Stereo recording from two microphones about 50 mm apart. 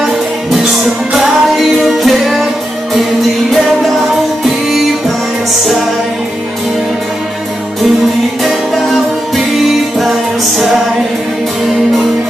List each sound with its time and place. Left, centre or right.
0.0 s music: centre
3.5 s music: centre
8.5 s music: centre